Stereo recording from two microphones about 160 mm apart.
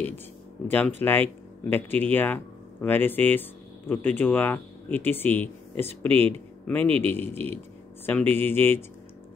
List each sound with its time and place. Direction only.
0.7 s speech: 10° left (ahead or behind)